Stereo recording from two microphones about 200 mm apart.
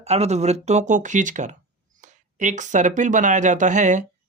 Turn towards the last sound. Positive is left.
turn(degrees=-40)  # may be behind; listen again after turning